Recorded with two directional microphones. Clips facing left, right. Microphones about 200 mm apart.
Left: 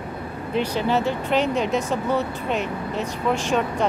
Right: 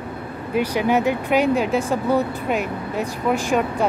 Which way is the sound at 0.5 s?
10° right (ahead or behind).